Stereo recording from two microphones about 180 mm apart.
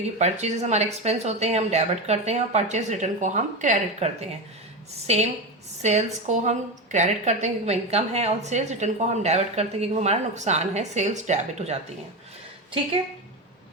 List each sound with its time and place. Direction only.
0.2 s a woman's voice: 40° right (ahead or behind)